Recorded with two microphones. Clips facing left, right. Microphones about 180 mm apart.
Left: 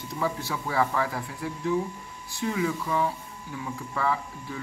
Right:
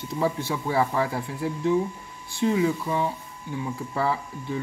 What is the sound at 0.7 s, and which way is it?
Speech, 30° right (ahead or behind).